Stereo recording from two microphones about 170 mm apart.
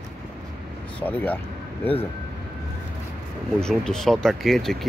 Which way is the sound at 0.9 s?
10° left (ahead or behind).